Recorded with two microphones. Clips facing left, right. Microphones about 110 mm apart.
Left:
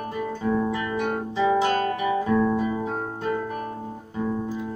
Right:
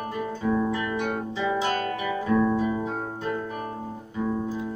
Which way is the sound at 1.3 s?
40° left (ahead or behind).